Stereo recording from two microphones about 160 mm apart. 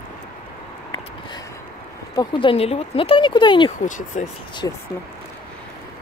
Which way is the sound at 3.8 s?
50° left (ahead or behind).